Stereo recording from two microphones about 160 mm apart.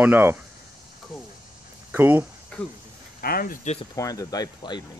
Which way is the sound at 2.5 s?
5° left (ahead or behind).